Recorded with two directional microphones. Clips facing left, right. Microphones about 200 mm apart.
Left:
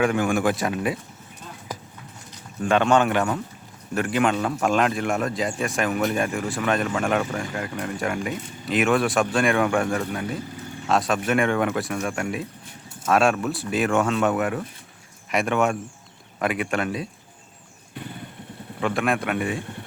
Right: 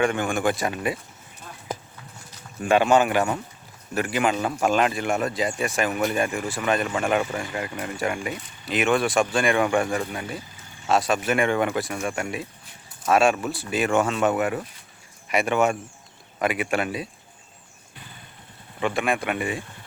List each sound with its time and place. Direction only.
0.0 s speech: centre (ahead or behind)
1.7 s clip-clop: 25° right (ahead or behind)
2.6 s speech: 5° right (ahead or behind)
18.8 s speech: centre (ahead or behind)